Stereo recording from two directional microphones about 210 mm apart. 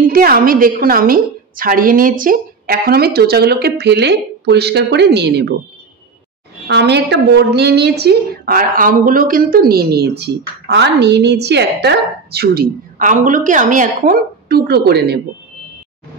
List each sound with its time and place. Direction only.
0.0 s a woman's voice: 45° right (ahead or behind)
6.7 s a woman's voice: 55° right (ahead or behind)